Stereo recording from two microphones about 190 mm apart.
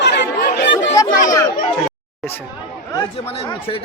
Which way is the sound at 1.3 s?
20° left (ahead or behind).